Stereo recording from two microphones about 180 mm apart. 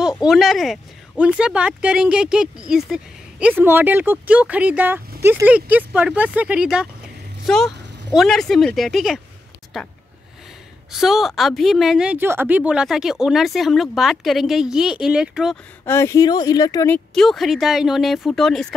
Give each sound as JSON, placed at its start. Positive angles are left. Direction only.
{"t": 0.3, "sound": "a woman's voice", "side_deg": 0}
{"t": 15.8, "sound": "speech", "side_deg": 15}
{"t": 16.9, "sound": "a woman's voice", "side_deg": 5}